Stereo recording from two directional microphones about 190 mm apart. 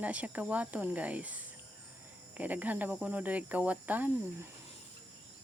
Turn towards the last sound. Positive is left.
turn(degrees=-10)  # may be behind; listen again after turning